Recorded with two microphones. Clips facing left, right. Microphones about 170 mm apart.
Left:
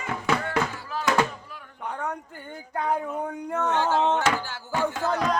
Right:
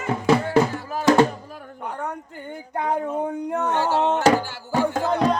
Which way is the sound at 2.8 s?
20° right (ahead or behind).